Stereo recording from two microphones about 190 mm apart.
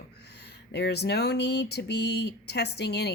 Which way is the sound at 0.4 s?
60° left (ahead or behind).